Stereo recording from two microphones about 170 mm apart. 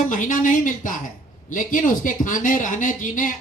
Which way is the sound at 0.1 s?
50° left (ahead or behind).